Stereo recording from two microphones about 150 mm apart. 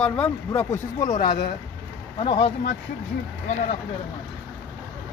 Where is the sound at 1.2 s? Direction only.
80° left.